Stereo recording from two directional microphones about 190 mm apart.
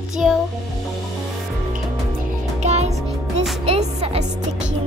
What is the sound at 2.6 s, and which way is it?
Music, 35° right (ahead or behind).